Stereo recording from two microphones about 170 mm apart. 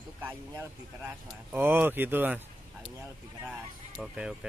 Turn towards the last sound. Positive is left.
turn(degrees=-5)  # may be behind; listen again after turning